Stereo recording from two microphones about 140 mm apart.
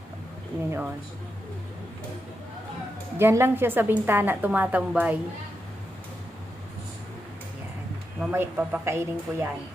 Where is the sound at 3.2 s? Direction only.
15° right (ahead or behind).